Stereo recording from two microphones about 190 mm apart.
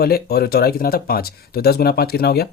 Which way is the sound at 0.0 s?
55° left (ahead or behind).